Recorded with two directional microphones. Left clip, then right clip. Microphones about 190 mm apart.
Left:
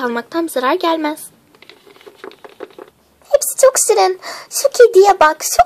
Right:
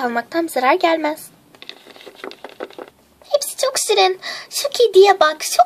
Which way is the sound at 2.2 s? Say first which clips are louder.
Right 2 dB; 15° right (ahead or behind).